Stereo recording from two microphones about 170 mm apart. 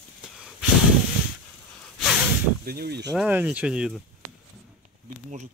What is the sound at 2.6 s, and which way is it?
Speech, 65° right (ahead or behind).